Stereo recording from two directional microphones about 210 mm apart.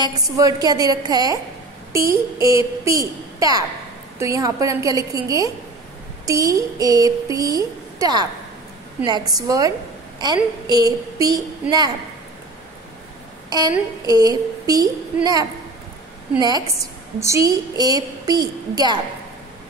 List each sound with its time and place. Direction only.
0.0 s a woman's voice: 20° right (ahead or behind)
13.5 s a woman's voice: 20° right (ahead or behind)
16.3 s a woman's voice: 20° right (ahead or behind)